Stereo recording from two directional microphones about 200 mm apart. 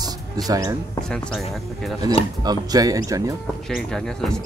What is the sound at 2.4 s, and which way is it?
Speech, 20° right (ahead or behind).